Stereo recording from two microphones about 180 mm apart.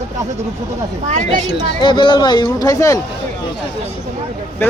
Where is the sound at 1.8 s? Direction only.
25° left (ahead or behind).